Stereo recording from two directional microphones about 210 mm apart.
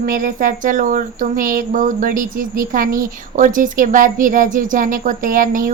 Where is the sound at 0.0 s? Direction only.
40° right (ahead or behind).